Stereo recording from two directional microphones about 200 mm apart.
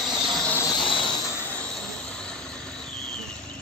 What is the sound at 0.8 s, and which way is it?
Train, 25° left (ahead or behind).